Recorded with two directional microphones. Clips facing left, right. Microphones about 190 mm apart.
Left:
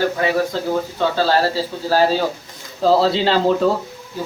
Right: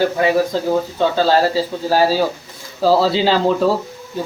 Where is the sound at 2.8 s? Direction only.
Centre (ahead or behind).